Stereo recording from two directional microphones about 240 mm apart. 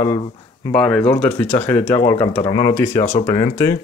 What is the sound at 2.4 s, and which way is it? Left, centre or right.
Speech, left.